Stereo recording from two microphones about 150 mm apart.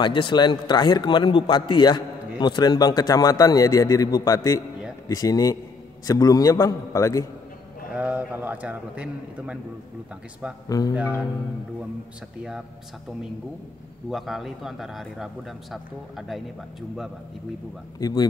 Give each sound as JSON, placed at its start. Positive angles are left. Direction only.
{"t": 0.0, "sound": "a man's voice", "side_deg": 30}
{"t": 7.9, "sound": "a man's voice", "side_deg": -10}
{"t": 10.7, "sound": "a man's voice", "side_deg": 25}
{"t": 14.1, "sound": "a man's voice", "side_deg": 0}
{"t": 17.9, "sound": "a man's voice", "side_deg": 25}